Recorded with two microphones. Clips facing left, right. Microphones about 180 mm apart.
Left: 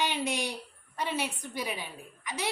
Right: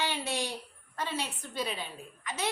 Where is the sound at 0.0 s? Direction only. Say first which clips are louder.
Left 2 dB; 15° left (ahead or behind).